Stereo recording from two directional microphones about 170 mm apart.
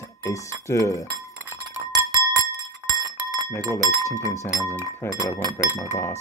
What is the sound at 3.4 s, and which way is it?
Speech, 20° left (ahead or behind).